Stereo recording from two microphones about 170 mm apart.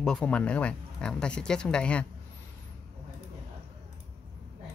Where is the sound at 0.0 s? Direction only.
5° left (ahead or behind).